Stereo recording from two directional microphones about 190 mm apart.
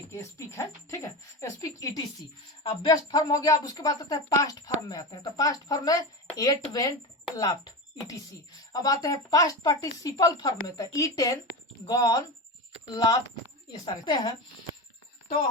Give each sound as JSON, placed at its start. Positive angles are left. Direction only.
{"t": 0.1, "sound": "speech", "side_deg": 15}